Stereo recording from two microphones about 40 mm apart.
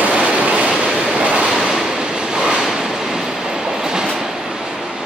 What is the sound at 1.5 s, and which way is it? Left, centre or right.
Waves, centre.